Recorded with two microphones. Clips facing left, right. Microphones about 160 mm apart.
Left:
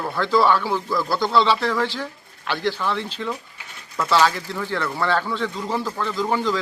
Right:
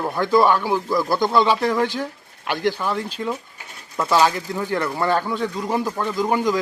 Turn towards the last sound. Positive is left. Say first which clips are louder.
# right 2 dB
turn(degrees=-15)  # may be behind; listen again after turning